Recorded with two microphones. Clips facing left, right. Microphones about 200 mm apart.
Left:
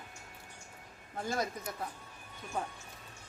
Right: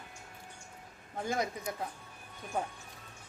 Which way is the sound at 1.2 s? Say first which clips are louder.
Right 2 dB; 20° right (ahead or behind).